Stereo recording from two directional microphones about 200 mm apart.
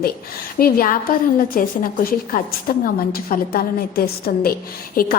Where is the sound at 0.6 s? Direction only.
45° left (ahead or behind).